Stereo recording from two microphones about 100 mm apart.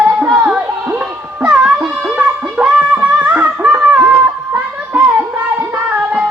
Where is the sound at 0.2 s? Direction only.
10° right (ahead or behind).